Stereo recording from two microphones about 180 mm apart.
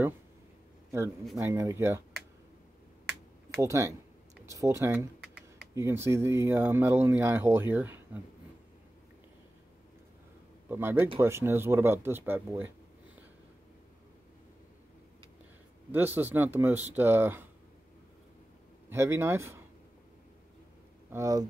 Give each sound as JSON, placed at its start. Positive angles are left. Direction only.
{"t": 1.4, "sound": "speech", "side_deg": -15}
{"t": 3.6, "sound": "speech", "side_deg": -15}
{"t": 10.7, "sound": "speech", "side_deg": -10}
{"t": 15.9, "sound": "speech", "side_deg": -10}
{"t": 18.9, "sound": "speech", "side_deg": -15}
{"t": 21.1, "sound": "speech", "side_deg": -20}